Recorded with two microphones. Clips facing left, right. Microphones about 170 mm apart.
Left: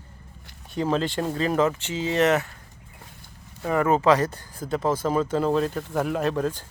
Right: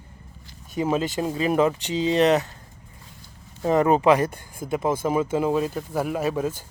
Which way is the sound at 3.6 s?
20° right (ahead or behind).